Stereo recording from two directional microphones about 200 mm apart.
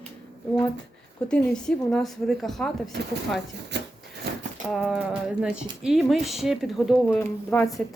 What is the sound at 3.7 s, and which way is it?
Rub, 60° right (ahead or behind).